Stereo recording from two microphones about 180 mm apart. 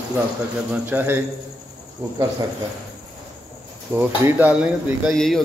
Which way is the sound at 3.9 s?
10° right (ahead or behind).